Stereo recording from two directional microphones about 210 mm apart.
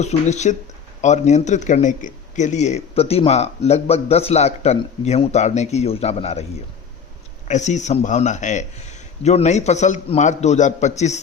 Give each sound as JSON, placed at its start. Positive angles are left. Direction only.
{"t": 0.0, "sound": "speech", "side_deg": 35}
{"t": 7.4, "sound": "speech", "side_deg": 35}